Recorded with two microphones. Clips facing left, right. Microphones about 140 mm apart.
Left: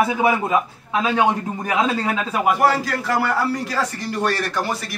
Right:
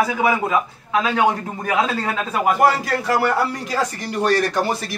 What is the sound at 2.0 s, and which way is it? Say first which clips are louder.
Speech: left 1 dB; 10° left (ahead or behind).